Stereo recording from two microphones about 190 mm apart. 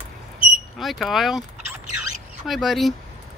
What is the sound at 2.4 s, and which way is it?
Speech, centre (ahead or behind).